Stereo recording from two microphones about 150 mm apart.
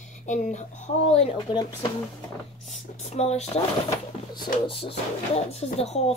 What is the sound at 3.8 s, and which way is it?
A woman's voice, 30° left (ahead or behind).